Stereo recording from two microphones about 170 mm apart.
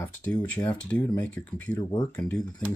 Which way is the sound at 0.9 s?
10° left (ahead or behind).